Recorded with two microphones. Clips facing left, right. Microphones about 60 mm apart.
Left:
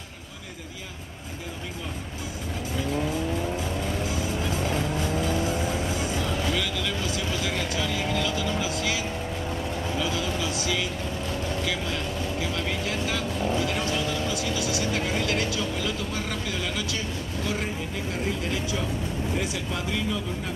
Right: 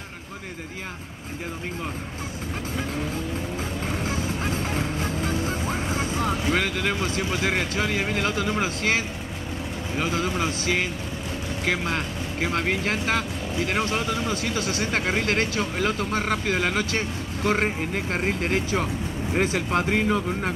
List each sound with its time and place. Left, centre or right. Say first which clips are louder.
3.8 s vehicle: right 1 dB; right
9.9 s a sound: right 5 dB; right
11.6 s speech: right 3 dB; right